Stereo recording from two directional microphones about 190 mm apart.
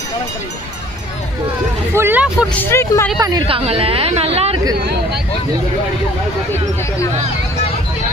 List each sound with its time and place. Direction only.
2.0 s speech: 10° right (ahead or behind)
2.6 s speech: 15° left (ahead or behind)
3.2 s speech: 20° right (ahead or behind)